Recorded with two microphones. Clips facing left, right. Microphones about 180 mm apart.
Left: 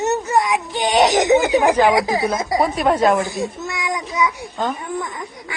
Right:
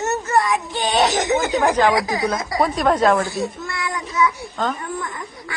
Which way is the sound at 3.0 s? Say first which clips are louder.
Left 1 dB; 20° left (ahead or behind).